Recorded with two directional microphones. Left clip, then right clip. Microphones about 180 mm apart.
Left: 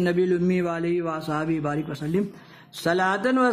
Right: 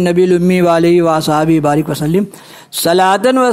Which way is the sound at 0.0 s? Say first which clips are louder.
Right 11 dB; 40° right (ahead or behind).